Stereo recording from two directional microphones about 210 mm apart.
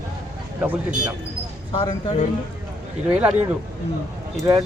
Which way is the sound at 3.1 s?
5° right (ahead or behind).